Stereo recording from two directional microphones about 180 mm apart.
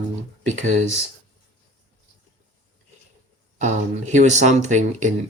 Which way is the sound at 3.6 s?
40° right (ahead or behind).